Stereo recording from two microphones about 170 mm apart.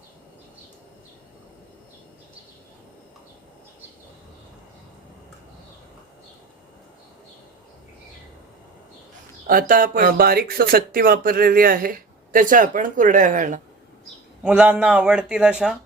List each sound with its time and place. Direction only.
9.5 s speech: 55° right (ahead or behind)
14.4 s speech: 5° right (ahead or behind)